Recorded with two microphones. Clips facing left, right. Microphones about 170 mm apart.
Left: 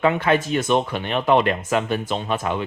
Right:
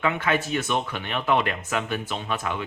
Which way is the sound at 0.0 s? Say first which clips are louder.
Left 6 dB; 35° left (ahead or behind).